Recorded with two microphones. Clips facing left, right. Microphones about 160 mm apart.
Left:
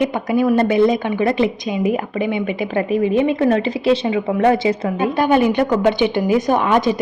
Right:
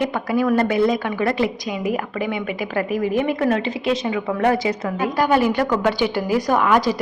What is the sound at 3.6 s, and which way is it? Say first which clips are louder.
A woman's voice: left 5 dB; 35° left (ahead or behind).